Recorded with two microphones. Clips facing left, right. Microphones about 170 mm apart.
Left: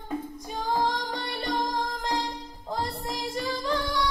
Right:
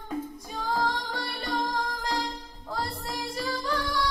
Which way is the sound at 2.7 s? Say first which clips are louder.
Left 2 dB; 20° left (ahead or behind).